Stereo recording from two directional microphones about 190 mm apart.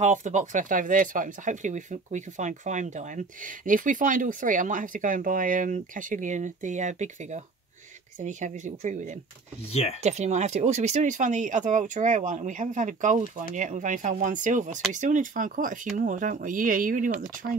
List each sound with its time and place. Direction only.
0.0 s speech: 40° right (ahead or behind)
9.7 s speech: 30° left (ahead or behind)
10.0 s speech: 35° right (ahead or behind)